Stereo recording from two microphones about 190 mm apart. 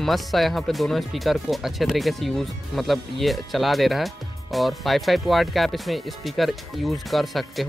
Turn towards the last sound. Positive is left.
turn(degrees=0)  # may be behind; listen again after turning